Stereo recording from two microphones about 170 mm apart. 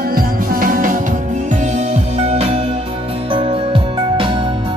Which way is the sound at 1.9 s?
40° right (ahead or behind).